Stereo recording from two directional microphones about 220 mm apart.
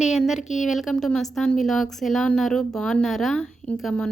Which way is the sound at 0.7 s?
Centre (ahead or behind).